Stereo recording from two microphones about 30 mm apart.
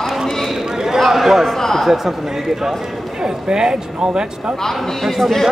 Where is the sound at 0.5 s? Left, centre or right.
Centre.